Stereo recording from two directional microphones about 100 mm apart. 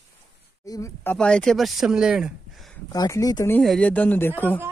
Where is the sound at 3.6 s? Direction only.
10° left (ahead or behind).